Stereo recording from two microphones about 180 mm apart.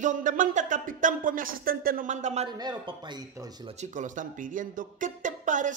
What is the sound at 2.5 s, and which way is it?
Speech, 20° right (ahead or behind).